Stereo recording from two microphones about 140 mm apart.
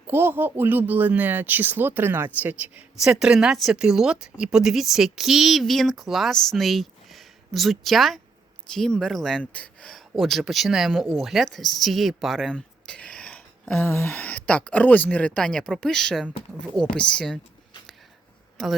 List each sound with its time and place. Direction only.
0.1 s speech: 15° right (ahead or behind); by 17.4 s 5° left (ahead or behind)
18.6 s speech: centre (ahead or behind)